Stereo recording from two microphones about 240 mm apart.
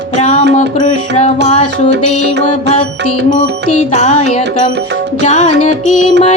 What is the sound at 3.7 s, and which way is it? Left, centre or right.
Music, left.